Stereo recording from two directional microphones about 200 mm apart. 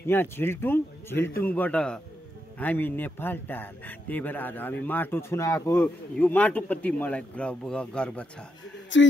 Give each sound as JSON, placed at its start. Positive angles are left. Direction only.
{"t": 0.0, "sound": "a man's voice", "side_deg": 10}
{"t": 8.9, "sound": "speech", "side_deg": 65}